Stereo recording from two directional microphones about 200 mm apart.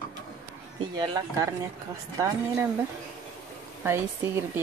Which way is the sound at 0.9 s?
20° right (ahead or behind).